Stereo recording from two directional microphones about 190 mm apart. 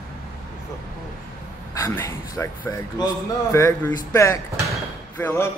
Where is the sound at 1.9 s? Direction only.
15° left (ahead or behind).